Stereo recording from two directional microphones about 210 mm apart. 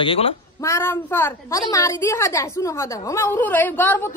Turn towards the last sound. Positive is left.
turn(degrees=10)  # may be behind; listen again after turning